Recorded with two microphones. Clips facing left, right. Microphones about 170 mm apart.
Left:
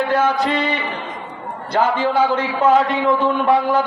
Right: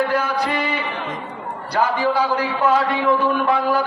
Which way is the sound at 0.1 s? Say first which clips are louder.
Left 4 dB; 20° left (ahead or behind).